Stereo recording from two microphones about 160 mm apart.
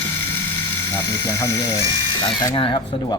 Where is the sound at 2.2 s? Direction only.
30° left (ahead or behind).